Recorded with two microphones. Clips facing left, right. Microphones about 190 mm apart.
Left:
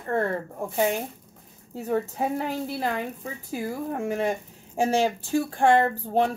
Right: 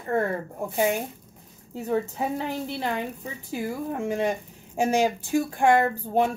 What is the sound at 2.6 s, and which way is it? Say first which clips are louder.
A woman's voice: left 1 dB; 20° right (ahead or behind).